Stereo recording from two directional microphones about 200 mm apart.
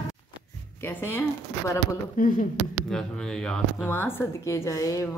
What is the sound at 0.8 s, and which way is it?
Speech, 10° left (ahead or behind).